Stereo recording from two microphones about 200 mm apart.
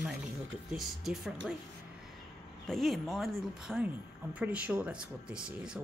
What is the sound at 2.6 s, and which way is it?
Speech, centre (ahead or behind).